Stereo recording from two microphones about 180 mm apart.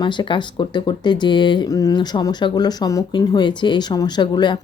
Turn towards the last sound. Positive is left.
turn(degrees=25)  # may be behind; listen again after turning